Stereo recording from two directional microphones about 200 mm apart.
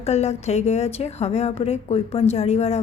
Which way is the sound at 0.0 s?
35° left (ahead or behind).